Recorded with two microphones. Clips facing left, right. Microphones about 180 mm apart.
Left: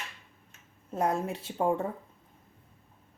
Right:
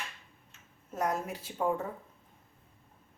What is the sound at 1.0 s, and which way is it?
Speech, 25° left (ahead or behind).